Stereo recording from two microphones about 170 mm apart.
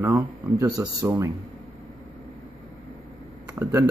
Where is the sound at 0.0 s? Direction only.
15° right (ahead or behind).